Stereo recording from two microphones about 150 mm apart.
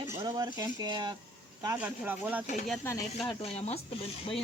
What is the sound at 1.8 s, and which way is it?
Speech, 10° right (ahead or behind).